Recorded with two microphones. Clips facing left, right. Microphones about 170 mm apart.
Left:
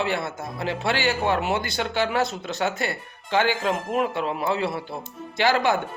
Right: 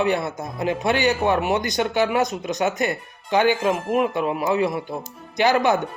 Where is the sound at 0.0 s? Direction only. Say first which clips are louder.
Right 4 dB; 20° right (ahead or behind).